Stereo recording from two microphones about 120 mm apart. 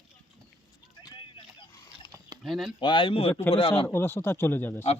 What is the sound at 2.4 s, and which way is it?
Speech, centre (ahead or behind).